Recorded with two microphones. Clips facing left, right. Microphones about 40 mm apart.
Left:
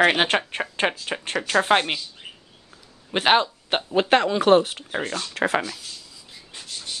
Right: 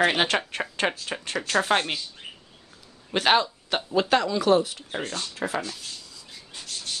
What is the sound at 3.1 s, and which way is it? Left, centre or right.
Speech, centre.